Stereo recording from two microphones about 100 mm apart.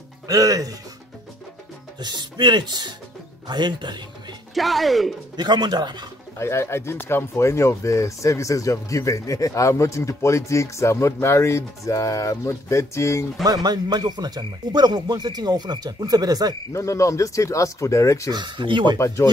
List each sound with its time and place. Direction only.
0.3 s speech: 35° right (ahead or behind)
2.0 s speech: 45° right (ahead or behind)
4.6 s speech: centre (ahead or behind)
5.3 s speech: 45° right (ahead or behind)
6.3 s speech: 25° left (ahead or behind)
13.4 s speech: 40° right (ahead or behind)
16.7 s speech: 30° left (ahead or behind)
18.3 s speech: 50° right (ahead or behind)
18.9 s speech: 30° left (ahead or behind)